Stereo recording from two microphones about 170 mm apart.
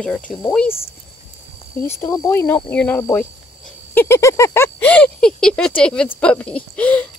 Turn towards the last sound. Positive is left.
turn(degrees=10)  # may be behind; listen again after turning